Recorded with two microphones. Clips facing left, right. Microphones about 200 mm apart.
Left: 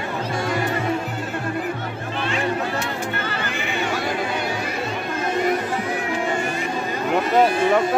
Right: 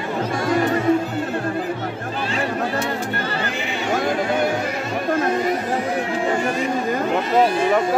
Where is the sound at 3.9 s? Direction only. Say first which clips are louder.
Right 8 dB; 50° right (ahead or behind).